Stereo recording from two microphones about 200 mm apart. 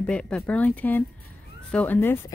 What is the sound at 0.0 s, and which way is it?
Speech, 5° left (ahead or behind).